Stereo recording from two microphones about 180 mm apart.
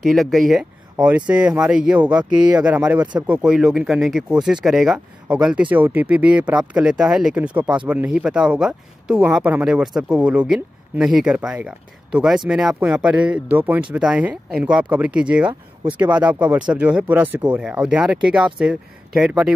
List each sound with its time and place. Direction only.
0.1 s speech: centre (ahead or behind)